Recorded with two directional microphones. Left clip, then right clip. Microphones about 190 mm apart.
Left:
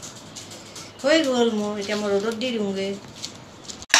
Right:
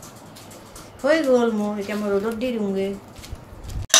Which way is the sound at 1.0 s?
45° right (ahead or behind).